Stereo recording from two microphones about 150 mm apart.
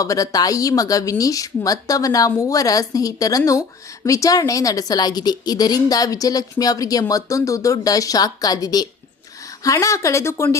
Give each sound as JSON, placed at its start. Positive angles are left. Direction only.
{"t": 0.0, "sound": "a woman's voice", "side_deg": 20}